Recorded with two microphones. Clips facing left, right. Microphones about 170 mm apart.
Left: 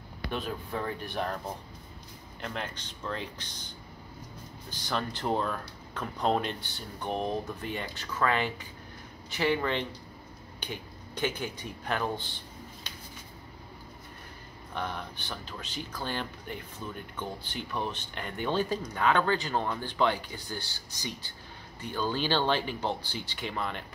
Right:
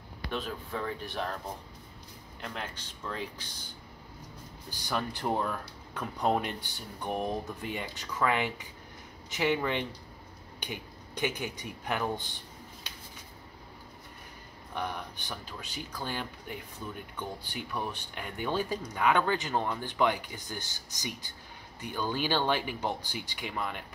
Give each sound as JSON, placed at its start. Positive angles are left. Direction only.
{"t": 0.3, "sound": "speech", "side_deg": 0}
{"t": 2.4, "sound": "speech", "side_deg": -5}
{"t": 14.7, "sound": "speech", "side_deg": -15}